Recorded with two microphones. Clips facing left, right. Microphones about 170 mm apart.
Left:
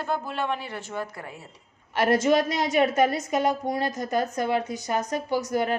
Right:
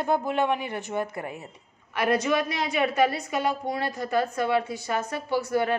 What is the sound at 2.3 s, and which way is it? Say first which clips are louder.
Speech: left 4 dB; 40° left (ahead or behind).